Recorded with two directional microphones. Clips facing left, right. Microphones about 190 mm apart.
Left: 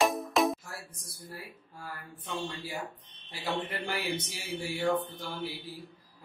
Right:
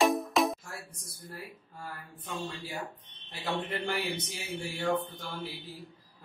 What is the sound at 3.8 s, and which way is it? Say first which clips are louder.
Speech: right 1 dB; 10° left (ahead or behind).